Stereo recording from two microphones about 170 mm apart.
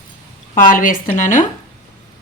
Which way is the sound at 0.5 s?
50° left (ahead or behind).